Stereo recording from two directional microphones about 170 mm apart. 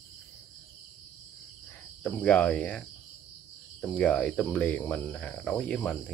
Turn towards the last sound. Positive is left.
turn(degrees=5)  # may be behind; listen again after turning